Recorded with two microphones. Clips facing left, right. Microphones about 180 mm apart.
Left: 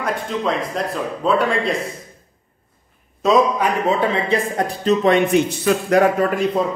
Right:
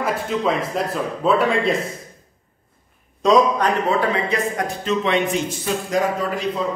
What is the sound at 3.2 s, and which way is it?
Speech, 5° left (ahead or behind).